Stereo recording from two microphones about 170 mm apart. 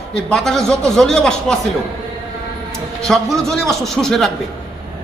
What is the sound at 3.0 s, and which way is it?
A man's voice, centre (ahead or behind).